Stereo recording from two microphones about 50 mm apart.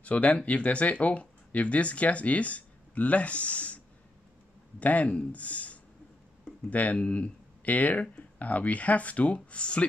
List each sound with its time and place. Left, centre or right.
0.0 s speech: left